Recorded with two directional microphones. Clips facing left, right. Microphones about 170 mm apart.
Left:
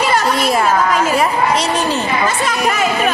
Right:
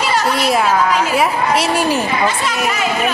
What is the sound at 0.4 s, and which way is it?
A woman's voice, centre (ahead or behind).